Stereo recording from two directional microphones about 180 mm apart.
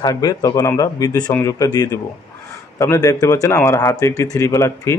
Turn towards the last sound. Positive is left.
turn(degrees=15)  # may be behind; listen again after turning